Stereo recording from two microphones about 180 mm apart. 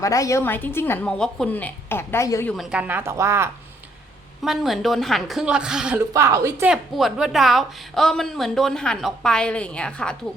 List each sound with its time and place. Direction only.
0.0 s a woman's voice: 20° left (ahead or behind)
2.5 s a woman's voice: centre (ahead or behind)
4.4 s a woman's voice: centre (ahead or behind)
6.1 s a woman's voice: 15° right (ahead or behind)
6.7 s a woman's voice: centre (ahead or behind)